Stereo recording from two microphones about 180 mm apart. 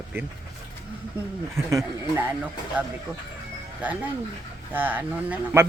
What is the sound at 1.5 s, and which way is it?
Speech, 15° right (ahead or behind).